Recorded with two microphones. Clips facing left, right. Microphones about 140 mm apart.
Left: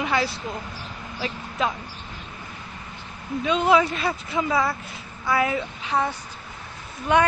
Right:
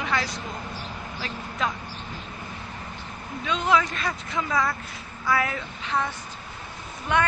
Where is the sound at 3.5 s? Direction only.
10° left (ahead or behind).